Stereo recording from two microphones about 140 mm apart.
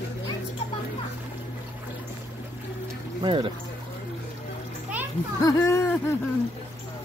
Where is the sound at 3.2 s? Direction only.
35° right (ahead or behind).